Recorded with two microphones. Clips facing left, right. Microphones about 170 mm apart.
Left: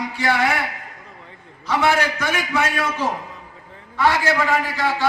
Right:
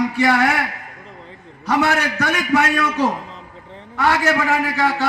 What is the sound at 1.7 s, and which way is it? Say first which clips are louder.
A man's voice: right 1 dB; 65° right (ahead or behind).